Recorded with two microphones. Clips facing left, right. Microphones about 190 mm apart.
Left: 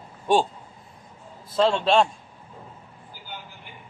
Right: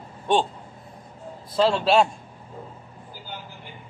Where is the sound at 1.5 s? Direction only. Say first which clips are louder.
Even; centre (ahead or behind).